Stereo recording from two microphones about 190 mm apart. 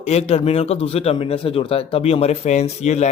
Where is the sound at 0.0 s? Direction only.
35° left (ahead or behind).